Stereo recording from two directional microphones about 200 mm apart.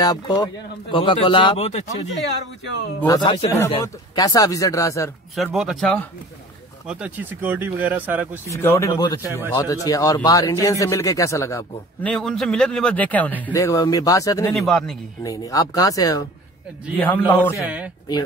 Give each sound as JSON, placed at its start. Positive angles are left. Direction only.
{"t": 0.0, "sound": "speech", "side_deg": 20}
{"t": 3.0, "sound": "speech", "side_deg": 20}
{"t": 5.3, "sound": "speech", "side_deg": 0}
{"t": 6.9, "sound": "speech", "side_deg": -5}
{"t": 8.5, "sound": "speech", "side_deg": 15}
{"t": 14.5, "sound": "speech", "side_deg": 0}
{"t": 15.2, "sound": "speech", "side_deg": 15}
{"t": 17.6, "sound": "speech", "side_deg": -5}